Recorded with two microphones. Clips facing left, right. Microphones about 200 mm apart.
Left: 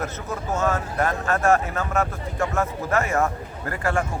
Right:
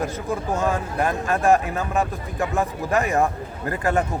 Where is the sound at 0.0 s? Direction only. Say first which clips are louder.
Right 4 dB; 15° right (ahead or behind).